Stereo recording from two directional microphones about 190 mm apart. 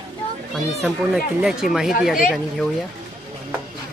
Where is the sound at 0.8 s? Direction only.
Centre (ahead or behind).